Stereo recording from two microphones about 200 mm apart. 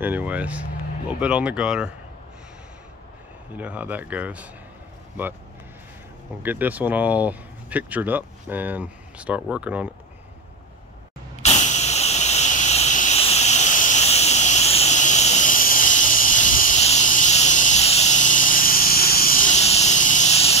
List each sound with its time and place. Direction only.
0.0 s speech: 10° right (ahead or behind)
3.5 s speech: 10° right (ahead or behind)
6.4 s speech: 10° right (ahead or behind)
11.4 s vehicle: 35° left (ahead or behind)